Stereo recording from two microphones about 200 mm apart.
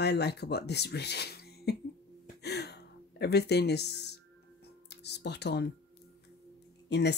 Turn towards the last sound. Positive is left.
turn(degrees=60)  # may be behind; listen again after turning